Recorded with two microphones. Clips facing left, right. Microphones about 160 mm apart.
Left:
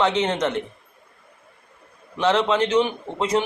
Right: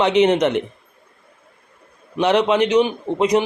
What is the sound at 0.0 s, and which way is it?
Speech, 15° right (ahead or behind).